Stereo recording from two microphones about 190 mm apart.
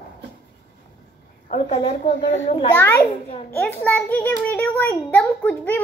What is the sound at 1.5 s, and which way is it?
Speech, 30° left (ahead or behind).